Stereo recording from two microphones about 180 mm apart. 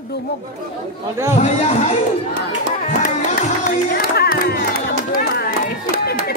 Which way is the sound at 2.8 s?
50° left (ahead or behind).